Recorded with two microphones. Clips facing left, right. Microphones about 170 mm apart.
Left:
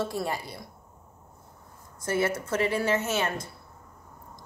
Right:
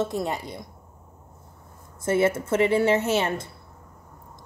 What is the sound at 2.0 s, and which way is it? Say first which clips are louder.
Speech: right 5 dB; 25° right (ahead or behind).